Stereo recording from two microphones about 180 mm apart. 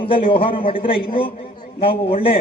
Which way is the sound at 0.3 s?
30° left (ahead or behind).